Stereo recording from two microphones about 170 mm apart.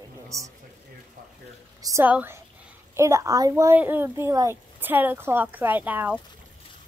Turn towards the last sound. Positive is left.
turn(degrees=-10)  # may be behind; listen again after turning